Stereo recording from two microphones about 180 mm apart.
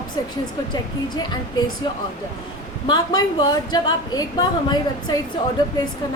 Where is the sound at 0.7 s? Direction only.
25° left (ahead or behind).